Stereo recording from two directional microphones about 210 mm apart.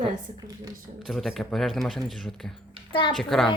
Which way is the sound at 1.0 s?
Centre (ahead or behind).